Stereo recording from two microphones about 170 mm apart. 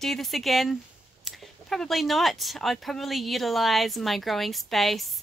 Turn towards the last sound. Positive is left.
turn(degrees=0)  # may be behind; listen again after turning